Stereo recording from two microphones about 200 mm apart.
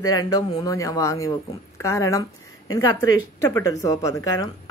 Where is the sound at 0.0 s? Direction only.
20° left (ahead or behind).